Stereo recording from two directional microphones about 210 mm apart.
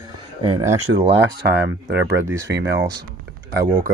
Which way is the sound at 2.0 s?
10° right (ahead or behind).